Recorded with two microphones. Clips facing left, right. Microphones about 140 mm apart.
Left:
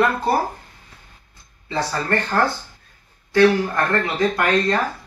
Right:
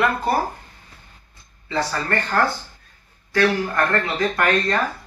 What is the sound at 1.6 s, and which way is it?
Speech, 25° left (ahead or behind).